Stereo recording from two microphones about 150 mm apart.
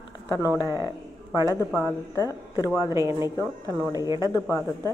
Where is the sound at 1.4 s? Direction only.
25° left (ahead or behind).